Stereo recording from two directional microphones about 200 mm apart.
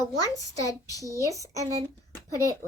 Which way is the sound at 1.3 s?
15° right (ahead or behind).